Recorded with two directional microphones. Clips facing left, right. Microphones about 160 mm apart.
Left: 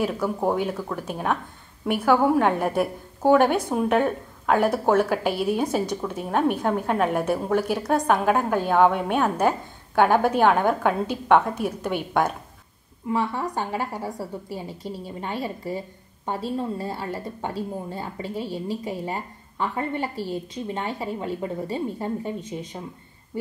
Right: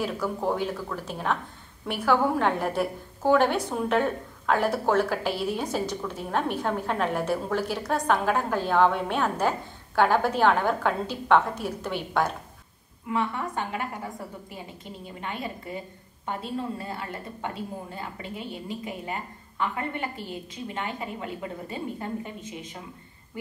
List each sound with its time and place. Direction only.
0.0 s a woman's voice: 20° left (ahead or behind)
13.1 s a woman's voice: 35° left (ahead or behind)